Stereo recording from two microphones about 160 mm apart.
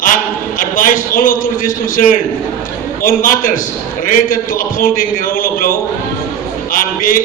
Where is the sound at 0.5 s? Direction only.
60° left (ahead or behind).